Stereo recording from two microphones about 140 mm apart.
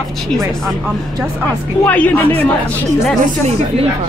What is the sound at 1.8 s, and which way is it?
Speech, 10° left (ahead or behind).